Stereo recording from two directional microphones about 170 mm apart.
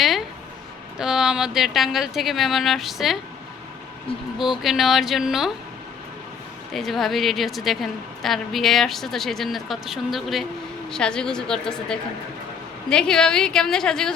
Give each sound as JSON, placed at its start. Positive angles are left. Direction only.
{"t": 0.0, "sound": "a sound", "side_deg": 0}
{"t": 0.9, "sound": "a woman's voice", "side_deg": -5}
{"t": 4.6, "sound": "a woman's voice", "side_deg": 0}
{"t": 6.7, "sound": "a woman's voice", "side_deg": 0}